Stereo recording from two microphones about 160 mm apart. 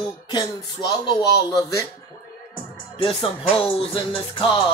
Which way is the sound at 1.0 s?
20° left (ahead or behind).